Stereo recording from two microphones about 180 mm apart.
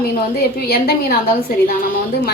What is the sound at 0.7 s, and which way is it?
Speech, 55° left (ahead or behind).